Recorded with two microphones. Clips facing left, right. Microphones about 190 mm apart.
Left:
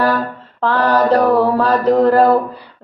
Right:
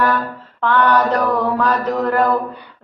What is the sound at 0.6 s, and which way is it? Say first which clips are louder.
Mantra: left 1 dB; 35° left (ahead or behind).